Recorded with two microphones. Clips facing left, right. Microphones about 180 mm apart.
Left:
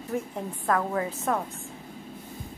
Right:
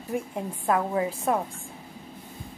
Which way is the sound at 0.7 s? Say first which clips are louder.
Right 2 dB; 15° right (ahead or behind).